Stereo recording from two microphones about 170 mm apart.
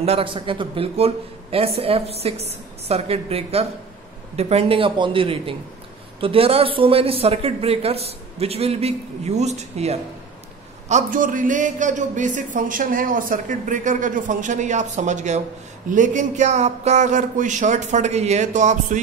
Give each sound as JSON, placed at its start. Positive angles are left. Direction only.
{"t": 0.0, "sound": "a man's voice", "side_deg": -35}